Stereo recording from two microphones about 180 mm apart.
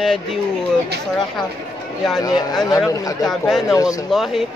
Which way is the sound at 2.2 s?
20° left (ahead or behind).